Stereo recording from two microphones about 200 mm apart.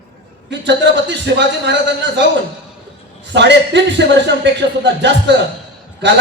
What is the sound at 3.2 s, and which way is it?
A man's voice, 60° right (ahead or behind).